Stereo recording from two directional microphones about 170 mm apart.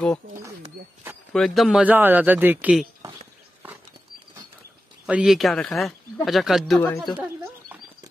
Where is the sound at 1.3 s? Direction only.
Centre (ahead or behind).